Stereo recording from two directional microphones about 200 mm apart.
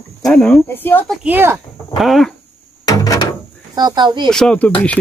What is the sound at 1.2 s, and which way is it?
Speech, 10° right (ahead or behind).